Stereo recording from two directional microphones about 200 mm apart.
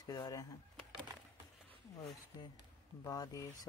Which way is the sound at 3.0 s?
20° left (ahead or behind).